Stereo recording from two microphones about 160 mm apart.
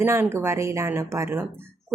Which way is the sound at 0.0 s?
15° right (ahead or behind).